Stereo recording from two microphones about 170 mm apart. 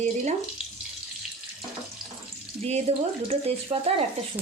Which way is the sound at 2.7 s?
40° right (ahead or behind).